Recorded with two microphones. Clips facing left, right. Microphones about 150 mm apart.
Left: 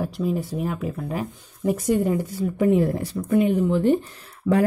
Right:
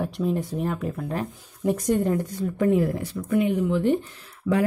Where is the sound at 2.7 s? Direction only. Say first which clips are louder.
Left 2 dB; 35° left (ahead or behind).